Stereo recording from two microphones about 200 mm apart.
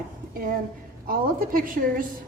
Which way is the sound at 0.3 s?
45° right (ahead or behind).